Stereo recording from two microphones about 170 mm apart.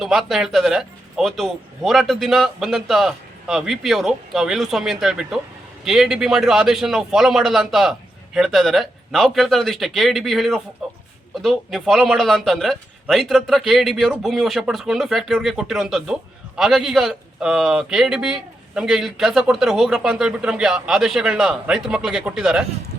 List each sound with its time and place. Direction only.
0.0 s a man's voice: centre (ahead or behind)
10.8 s a sound: centre (ahead or behind)
11.3 s a man's voice: centre (ahead or behind)